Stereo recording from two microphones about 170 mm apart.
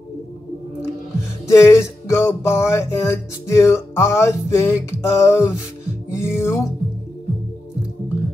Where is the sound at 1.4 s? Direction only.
15° left (ahead or behind).